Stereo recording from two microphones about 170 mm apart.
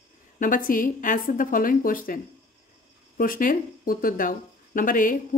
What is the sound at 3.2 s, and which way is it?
Speech, 55° left (ahead or behind).